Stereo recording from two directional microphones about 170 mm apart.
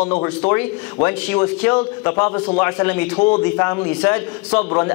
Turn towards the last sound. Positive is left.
turn(degrees=10)  # may be behind; listen again after turning